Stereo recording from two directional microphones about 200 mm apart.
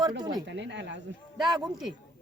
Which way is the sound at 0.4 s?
65° right (ahead or behind).